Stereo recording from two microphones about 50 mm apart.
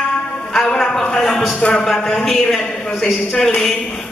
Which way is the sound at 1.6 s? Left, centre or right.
Centre.